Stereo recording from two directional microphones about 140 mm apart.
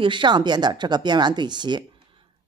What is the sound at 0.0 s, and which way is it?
Speech, 35° right (ahead or behind).